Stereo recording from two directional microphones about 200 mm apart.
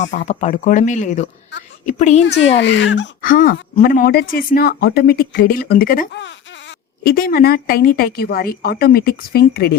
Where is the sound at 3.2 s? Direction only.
45° left (ahead or behind).